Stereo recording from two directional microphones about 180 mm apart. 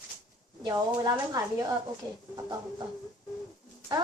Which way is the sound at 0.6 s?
20° right (ahead or behind).